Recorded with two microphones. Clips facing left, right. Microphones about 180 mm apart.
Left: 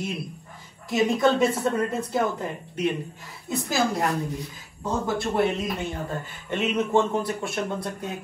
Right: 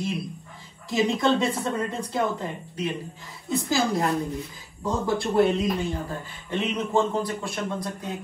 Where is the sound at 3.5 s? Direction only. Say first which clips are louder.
Right 1 dB; centre (ahead or behind).